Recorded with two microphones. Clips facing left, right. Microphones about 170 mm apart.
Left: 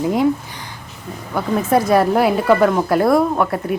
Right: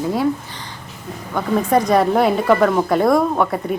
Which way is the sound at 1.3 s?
5° left (ahead or behind).